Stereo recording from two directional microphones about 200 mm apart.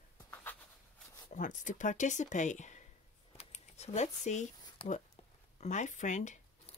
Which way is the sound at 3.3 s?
35° left (ahead or behind).